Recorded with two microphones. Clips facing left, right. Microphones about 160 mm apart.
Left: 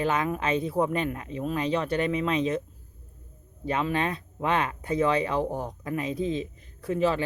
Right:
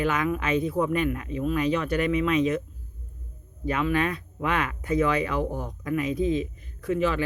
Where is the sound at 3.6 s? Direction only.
30° left (ahead or behind).